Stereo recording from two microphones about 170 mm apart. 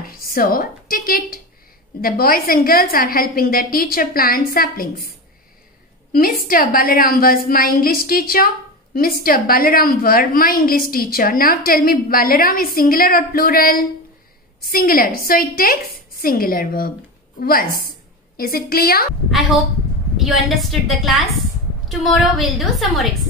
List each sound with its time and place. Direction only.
0.0 s a woman's voice: 60° left (ahead or behind)
6.1 s a woman's voice: 60° left (ahead or behind)
20.2 s a woman's voice: centre (ahead or behind)